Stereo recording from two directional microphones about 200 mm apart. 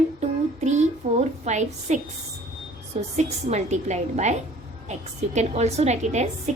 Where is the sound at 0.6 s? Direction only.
35° right (ahead or behind).